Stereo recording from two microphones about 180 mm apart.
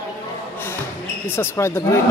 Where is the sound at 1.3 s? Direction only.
15° left (ahead or behind).